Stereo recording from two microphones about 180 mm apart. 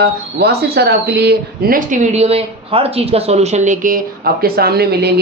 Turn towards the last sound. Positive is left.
turn(degrees=-60)  # may be behind; listen again after turning